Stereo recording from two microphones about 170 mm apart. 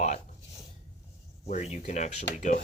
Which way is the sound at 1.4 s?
45° left (ahead or behind).